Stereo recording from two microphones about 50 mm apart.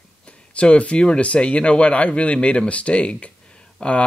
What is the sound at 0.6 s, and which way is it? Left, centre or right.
Speech, left.